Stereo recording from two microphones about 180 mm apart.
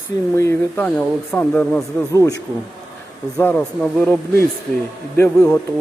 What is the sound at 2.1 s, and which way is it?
Speech, 20° left (ahead or behind).